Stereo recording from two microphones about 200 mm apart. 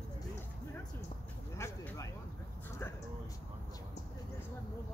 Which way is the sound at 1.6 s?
15° left (ahead or behind).